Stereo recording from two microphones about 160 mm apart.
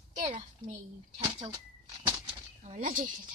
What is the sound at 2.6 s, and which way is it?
Speech, 50° right (ahead or behind).